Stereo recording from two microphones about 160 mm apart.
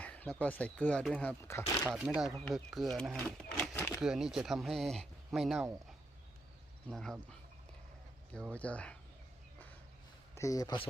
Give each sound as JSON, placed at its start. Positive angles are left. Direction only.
{"t": 0.0, "sound": "speech", "side_deg": 10}
{"t": 1.9, "sound": "speech", "side_deg": -5}
{"t": 4.0, "sound": "speech", "side_deg": -5}
{"t": 6.9, "sound": "speech", "side_deg": 5}
{"t": 8.5, "sound": "speech", "side_deg": 10}
{"t": 10.3, "sound": "speech", "side_deg": 20}